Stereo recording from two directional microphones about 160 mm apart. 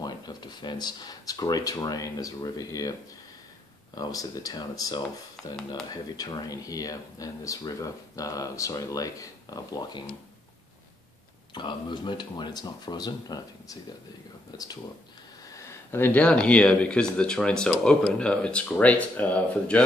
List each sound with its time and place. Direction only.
0.0 s speech: 25° left (ahead or behind)
3.9 s speech: 25° left (ahead or behind)
11.5 s speech: 30° left (ahead or behind); by 19.8 s 10° left (ahead or behind)